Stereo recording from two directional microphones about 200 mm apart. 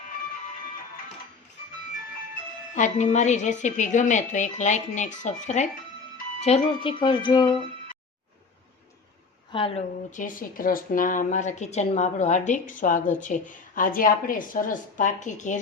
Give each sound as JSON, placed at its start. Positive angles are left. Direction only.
{"t": 2.7, "sound": "speech", "side_deg": 35}
{"t": 9.5, "sound": "speech", "side_deg": 25}